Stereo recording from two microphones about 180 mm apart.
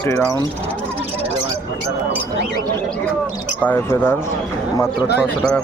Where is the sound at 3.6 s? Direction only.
10° left (ahead or behind).